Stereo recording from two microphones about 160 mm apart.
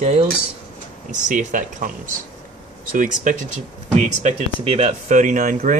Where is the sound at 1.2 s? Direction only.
55° right (ahead or behind).